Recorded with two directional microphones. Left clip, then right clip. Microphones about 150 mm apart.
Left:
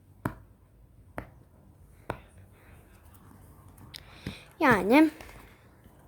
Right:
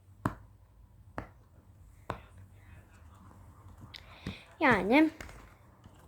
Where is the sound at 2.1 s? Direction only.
25° left (ahead or behind).